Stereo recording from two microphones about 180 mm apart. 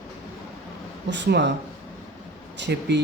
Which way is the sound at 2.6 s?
75° right (ahead or behind).